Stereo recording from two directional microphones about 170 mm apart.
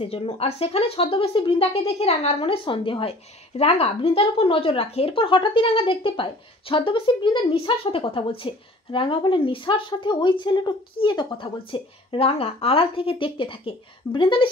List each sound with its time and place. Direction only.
0.0 s speech: 35° left (ahead or behind)